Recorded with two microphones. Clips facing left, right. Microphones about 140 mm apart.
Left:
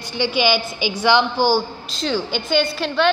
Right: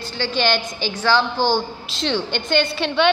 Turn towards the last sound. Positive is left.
turn(degrees=0)  # may be behind; listen again after turning